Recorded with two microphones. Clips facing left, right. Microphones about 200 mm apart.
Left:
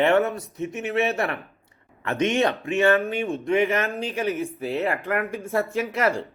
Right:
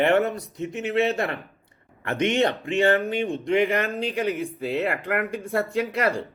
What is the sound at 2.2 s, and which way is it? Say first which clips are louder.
Speech: even; 15° right (ahead or behind).